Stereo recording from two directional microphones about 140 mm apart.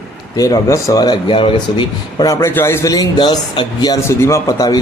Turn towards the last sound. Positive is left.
turn(degrees=25)  # may be behind; listen again after turning